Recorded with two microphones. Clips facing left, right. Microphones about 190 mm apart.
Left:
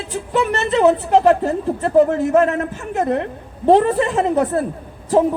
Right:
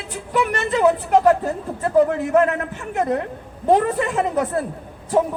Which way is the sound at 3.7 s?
30° left (ahead or behind).